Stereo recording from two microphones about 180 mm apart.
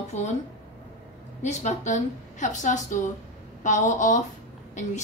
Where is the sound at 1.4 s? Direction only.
40° left (ahead or behind).